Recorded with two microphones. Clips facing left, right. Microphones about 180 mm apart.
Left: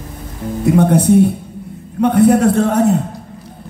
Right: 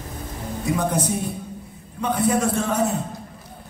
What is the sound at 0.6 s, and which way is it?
A man's voice, 65° left (ahead or behind).